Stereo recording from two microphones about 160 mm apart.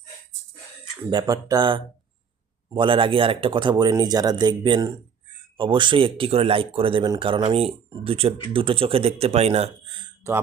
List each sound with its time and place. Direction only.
1.1 s speech: 25° right (ahead or behind)